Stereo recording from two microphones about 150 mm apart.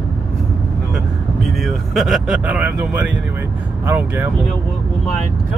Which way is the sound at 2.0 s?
Centre (ahead or behind).